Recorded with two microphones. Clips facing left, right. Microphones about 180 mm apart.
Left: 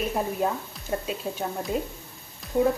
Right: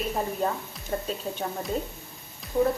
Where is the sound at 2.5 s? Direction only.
15° left (ahead or behind).